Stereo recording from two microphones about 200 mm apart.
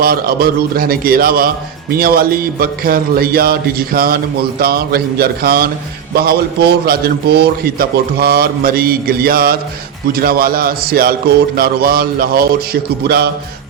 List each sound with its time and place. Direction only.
0.0 s a man's voice: 50° right (ahead or behind)